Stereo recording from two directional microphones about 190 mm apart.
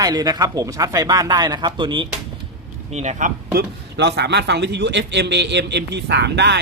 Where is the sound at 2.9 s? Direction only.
35° right (ahead or behind).